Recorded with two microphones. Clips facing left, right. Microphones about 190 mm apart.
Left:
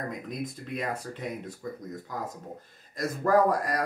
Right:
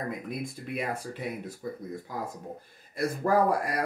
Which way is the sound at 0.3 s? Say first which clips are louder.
Even; 10° right (ahead or behind).